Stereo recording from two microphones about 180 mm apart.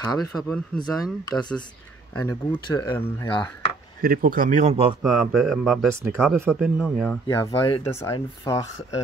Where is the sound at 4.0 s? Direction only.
50° right (ahead or behind); by 4.9 s 35° right (ahead or behind).